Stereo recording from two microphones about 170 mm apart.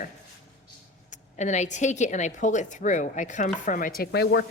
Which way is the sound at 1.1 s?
45° left (ahead or behind).